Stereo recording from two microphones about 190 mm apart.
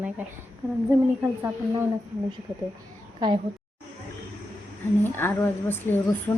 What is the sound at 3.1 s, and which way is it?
Speech, 25° right (ahead or behind).